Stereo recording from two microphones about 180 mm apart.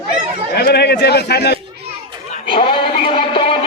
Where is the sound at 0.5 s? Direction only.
65° left (ahead or behind).